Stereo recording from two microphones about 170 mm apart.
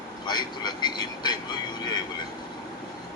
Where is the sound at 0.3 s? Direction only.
25° left (ahead or behind).